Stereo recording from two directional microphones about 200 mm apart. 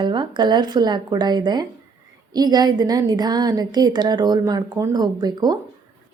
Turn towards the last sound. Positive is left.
turn(degrees=-20)  # may be behind; listen again after turning